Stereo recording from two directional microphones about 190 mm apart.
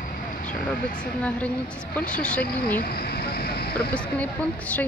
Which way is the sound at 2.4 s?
55° left (ahead or behind).